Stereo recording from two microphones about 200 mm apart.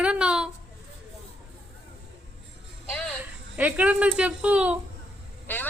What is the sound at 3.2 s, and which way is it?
Speech, 5° right (ahead or behind).